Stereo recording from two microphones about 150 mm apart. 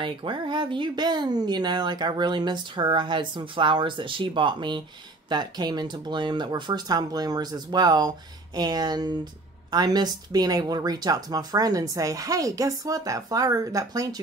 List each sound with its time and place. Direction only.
0.0 s speech: 30° right (ahead or behind)